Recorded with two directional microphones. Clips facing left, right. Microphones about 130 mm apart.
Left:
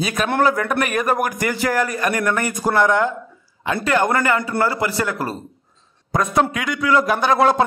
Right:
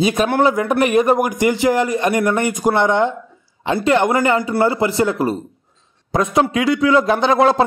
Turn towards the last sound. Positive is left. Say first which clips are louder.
# right 2 dB
turn(degrees=-25)  # may be behind; listen again after turning